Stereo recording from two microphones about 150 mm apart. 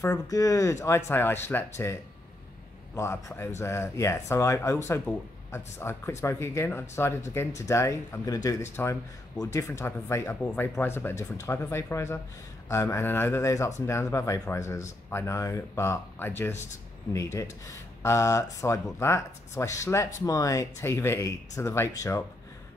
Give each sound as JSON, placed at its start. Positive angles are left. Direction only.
{"t": 0.0, "sound": "speech", "side_deg": 25}
{"t": 3.0, "sound": "speech", "side_deg": 20}